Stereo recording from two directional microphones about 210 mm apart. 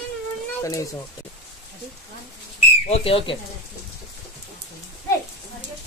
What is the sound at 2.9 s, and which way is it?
Speech, 25° left (ahead or behind).